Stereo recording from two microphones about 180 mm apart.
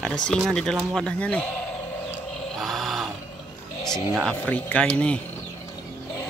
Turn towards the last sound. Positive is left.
turn(degrees=5)  # may be behind; listen again after turning